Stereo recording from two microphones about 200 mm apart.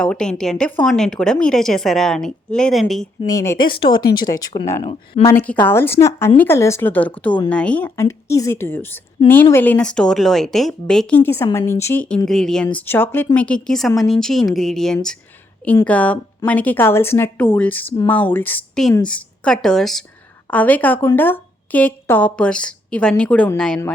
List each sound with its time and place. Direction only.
0.0 s a woman's voice: 5° left (ahead or behind)
3.2 s a woman's voice: 15° left (ahead or behind)